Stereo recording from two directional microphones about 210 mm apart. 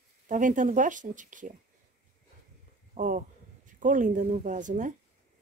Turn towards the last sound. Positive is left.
turn(degrees=-35)  # may be behind; listen again after turning